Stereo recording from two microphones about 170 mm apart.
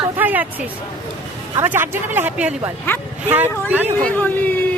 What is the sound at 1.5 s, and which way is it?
Speech, 15° right (ahead or behind).